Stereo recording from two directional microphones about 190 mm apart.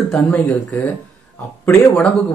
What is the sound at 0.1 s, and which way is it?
Speech, 5° left (ahead or behind).